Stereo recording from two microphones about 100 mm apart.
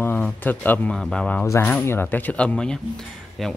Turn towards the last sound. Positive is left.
turn(degrees=0)  # may be behind; listen again after turning